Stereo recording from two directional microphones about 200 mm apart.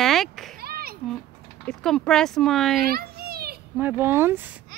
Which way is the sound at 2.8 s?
50° right (ahead or behind).